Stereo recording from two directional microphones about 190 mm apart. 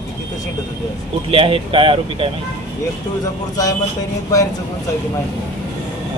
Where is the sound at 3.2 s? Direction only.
20° left (ahead or behind).